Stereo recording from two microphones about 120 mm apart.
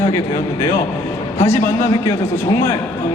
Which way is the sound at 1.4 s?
20° left (ahead or behind).